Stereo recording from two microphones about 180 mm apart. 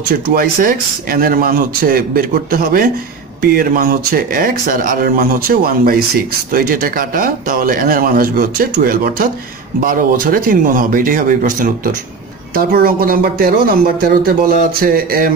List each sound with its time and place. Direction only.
0.1 s speech: 55° right (ahead or behind)